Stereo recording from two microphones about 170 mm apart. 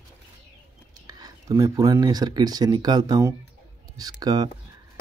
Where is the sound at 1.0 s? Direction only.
20° right (ahead or behind).